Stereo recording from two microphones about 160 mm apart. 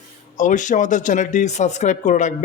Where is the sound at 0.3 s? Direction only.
50° left (ahead or behind).